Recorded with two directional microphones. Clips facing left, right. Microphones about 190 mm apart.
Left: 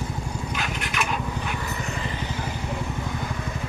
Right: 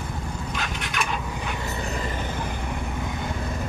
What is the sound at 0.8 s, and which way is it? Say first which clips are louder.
Vehicle: left 1 dB; centre (ahead or behind).